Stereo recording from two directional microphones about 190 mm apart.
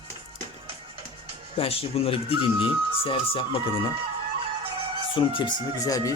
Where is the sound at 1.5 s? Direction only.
30° left (ahead or behind).